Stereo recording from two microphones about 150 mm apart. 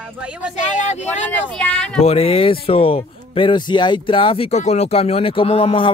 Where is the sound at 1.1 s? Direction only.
10° left (ahead or behind).